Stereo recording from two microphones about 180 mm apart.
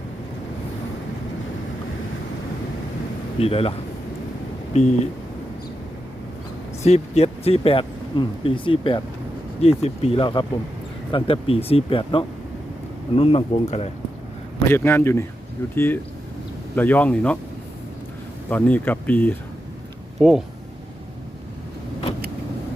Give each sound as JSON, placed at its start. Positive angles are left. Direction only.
{"t": 3.4, "sound": "speech", "side_deg": 35}
{"t": 6.8, "sound": "speech", "side_deg": 35}
{"t": 14.7, "sound": "speech", "side_deg": 10}
{"t": 18.5, "sound": "speech", "side_deg": 10}
{"t": 20.1, "sound": "speech", "side_deg": 0}